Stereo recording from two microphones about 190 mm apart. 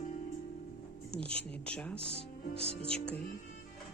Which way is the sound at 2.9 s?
5° left (ahead or behind).